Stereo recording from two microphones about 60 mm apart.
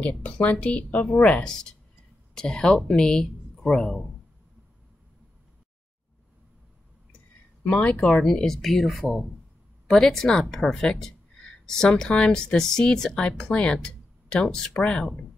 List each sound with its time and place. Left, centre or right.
0.0 s a woman's voice: left; by 4.0 s centre
7.8 s speech: centre
8.1 s speech: centre